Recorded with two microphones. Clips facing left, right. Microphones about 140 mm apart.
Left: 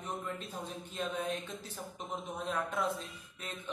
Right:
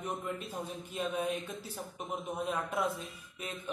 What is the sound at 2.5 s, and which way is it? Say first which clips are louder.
Speech: even; 10° right (ahead or behind).